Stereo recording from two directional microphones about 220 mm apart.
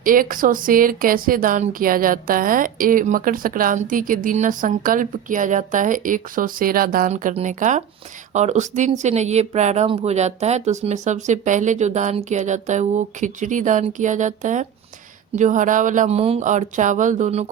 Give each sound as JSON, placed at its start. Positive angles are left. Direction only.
{"t": 0.0, "sound": "speech", "side_deg": -40}